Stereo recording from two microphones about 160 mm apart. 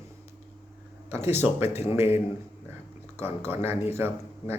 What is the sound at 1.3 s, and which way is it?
Speech, 15° right (ahead or behind).